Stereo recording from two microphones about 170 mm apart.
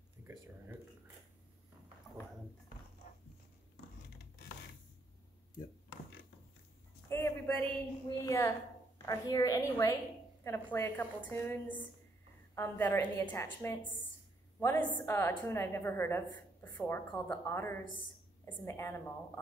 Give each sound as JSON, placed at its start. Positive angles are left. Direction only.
{"t": 3.1, "sound": "dog", "side_deg": 40}
{"t": 7.1, "sound": "a sound", "side_deg": 15}
{"t": 8.2, "sound": "a woman's voice", "side_deg": 15}